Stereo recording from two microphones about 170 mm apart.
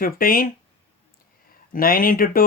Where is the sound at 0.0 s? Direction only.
55° left (ahead or behind).